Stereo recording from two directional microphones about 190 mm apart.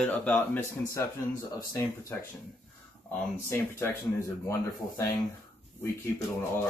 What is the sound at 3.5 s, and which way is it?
Speech, 10° left (ahead or behind).